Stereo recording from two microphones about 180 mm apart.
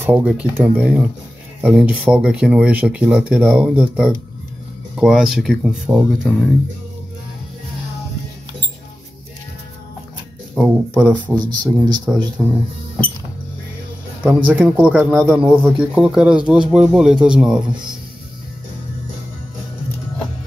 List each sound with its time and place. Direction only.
0.0 s speech: 10° right (ahead or behind)
10.5 s speech: 5° right (ahead or behind)
11.3 s speech: 25° right (ahead or behind)
12.4 s speech: 5° left (ahead or behind)
14.2 s speech: 5° right (ahead or behind)